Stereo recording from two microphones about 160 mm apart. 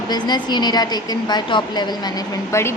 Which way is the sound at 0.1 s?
25° left (ahead or behind).